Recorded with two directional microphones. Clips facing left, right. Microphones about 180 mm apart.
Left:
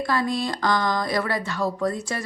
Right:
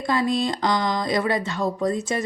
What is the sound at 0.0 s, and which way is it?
Speech, 20° right (ahead or behind).